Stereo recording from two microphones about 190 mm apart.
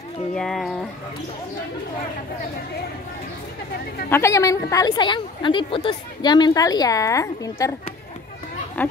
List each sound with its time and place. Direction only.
0.3 s speech: 5° left (ahead or behind)
4.1 s a woman's voice: 15° left (ahead or behind)
8.8 s speech: 10° left (ahead or behind)